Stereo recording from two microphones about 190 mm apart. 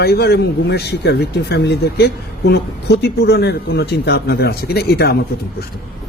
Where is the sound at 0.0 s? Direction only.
55° left (ahead or behind).